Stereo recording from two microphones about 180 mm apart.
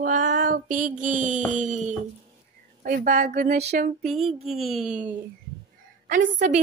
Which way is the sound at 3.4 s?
40° right (ahead or behind).